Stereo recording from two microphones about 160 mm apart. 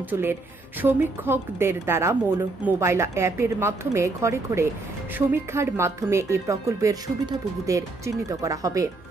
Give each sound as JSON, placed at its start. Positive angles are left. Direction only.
{"t": 0.1, "sound": "a woman's voice", "side_deg": -15}